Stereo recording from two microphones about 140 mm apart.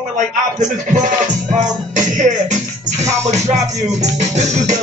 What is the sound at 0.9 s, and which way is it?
Music, 60° right (ahead or behind).